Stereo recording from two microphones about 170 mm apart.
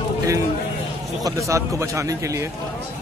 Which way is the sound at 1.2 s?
20° right (ahead or behind).